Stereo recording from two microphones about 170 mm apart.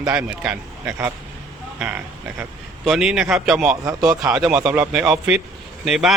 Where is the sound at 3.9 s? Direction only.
20° right (ahead or behind).